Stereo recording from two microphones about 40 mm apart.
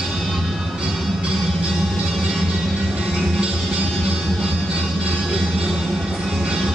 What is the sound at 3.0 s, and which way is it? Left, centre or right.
Music, right.